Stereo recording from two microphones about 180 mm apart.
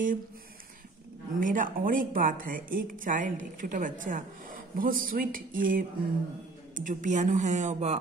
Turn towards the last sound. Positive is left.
turn(degrees=-40)  # may be behind; listen again after turning